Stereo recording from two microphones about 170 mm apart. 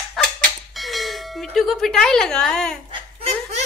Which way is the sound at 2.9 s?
30° right (ahead or behind).